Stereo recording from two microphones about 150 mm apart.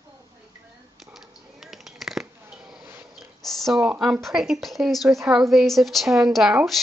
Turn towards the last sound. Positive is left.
turn(degrees=-5)  # may be behind; listen again after turning